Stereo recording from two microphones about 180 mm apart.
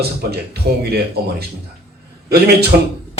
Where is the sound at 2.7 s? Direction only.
60° right (ahead or behind).